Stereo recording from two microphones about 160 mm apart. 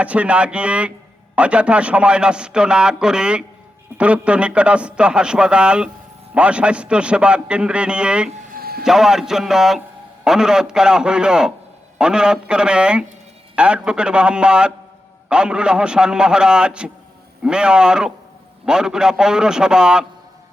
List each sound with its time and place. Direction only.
0.0 s a man's voice: 10° right (ahead or behind)
8.5 s a sound: 70° right (ahead or behind)
8.8 s a man's voice: 5° right (ahead or behind)